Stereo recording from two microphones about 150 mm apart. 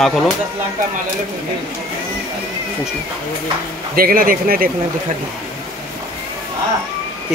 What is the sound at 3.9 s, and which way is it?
Speech, 75° right (ahead or behind).